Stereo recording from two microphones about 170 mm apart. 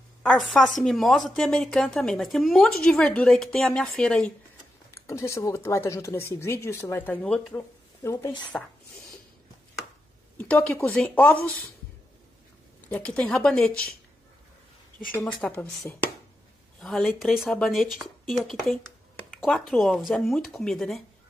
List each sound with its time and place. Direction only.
0.2 s speech: centre (ahead or behind)
4.9 s speech: 15° left (ahead or behind)
8.0 s speech: 15° left (ahead or behind)
10.3 s speech: 10° left (ahead or behind)
12.8 s speech: 10° left (ahead or behind)
15.4 s speech: 5° left (ahead or behind)